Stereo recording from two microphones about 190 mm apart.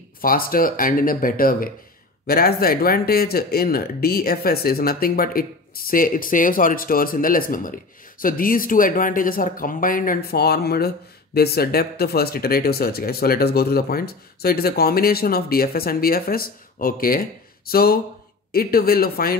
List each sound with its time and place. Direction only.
0.2 s speech: 50° left (ahead or behind)